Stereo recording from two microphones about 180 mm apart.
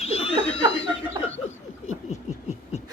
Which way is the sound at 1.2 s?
25° right (ahead or behind).